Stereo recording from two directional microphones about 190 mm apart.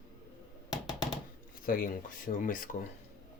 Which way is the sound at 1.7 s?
45° left (ahead or behind).